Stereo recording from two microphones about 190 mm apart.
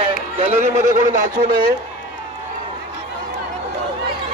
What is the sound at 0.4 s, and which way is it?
Speech, 35° right (ahead or behind).